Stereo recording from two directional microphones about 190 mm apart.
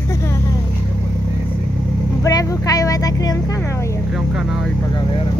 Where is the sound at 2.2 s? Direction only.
20° left (ahead or behind).